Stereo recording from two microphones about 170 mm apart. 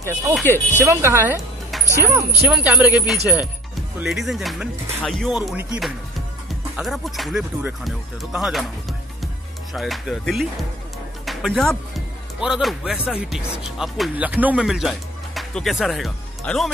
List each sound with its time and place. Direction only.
0.4 s speech: 10° left (ahead or behind)
0.7 s speech: 15° right (ahead or behind)
11.2 s music: centre (ahead or behind)
12.4 s speech: 5° right (ahead or behind)